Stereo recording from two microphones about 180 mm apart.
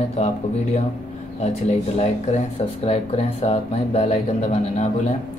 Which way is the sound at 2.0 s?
40° left (ahead or behind).